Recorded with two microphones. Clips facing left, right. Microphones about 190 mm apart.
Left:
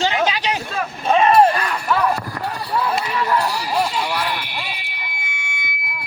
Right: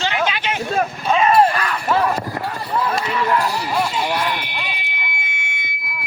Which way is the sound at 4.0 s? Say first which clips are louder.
Right 2 dB; 25° right (ahead or behind).